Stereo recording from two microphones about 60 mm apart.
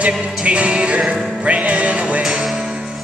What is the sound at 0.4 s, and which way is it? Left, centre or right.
Music, centre.